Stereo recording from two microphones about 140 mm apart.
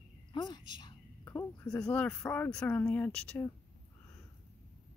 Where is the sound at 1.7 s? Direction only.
5° left (ahead or behind).